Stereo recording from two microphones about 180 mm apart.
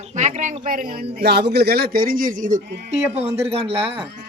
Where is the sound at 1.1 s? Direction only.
65° right (ahead or behind); by 2.6 s 45° right (ahead or behind).